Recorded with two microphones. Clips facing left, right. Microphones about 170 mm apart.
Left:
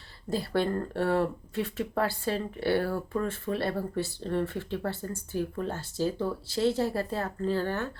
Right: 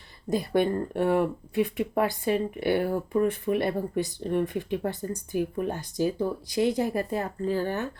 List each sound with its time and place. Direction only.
0.3 s speech: 15° right (ahead or behind)